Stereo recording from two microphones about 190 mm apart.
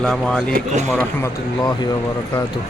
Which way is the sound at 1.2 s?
20° left (ahead or behind).